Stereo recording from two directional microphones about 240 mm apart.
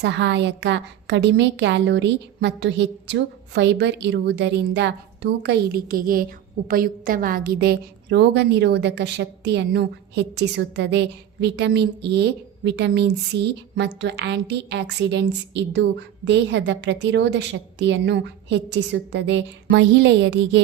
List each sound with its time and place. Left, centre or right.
0.0 s a woman's voice: right